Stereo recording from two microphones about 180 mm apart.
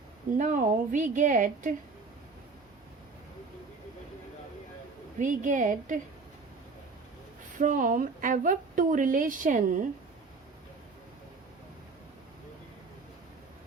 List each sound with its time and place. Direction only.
0.3 s a woman's voice: 45° right (ahead or behind)
5.2 s a woman's voice: 45° right (ahead or behind)
7.6 s a woman's voice: 50° right (ahead or behind)